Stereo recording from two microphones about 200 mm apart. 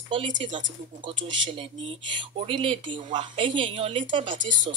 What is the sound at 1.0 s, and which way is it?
Speech, 25° right (ahead or behind).